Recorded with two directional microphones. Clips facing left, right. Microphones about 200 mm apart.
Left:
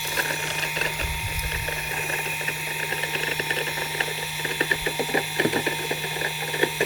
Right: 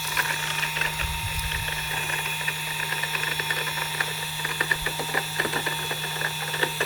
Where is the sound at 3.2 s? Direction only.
25° left (ahead or behind).